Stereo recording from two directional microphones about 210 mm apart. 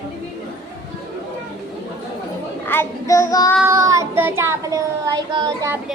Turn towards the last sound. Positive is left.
turn(degrees=-15)  # may be behind; listen again after turning